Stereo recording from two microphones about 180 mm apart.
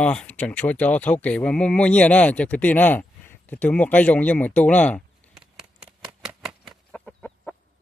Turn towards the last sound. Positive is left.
turn(degrees=5)  # may be behind; listen again after turning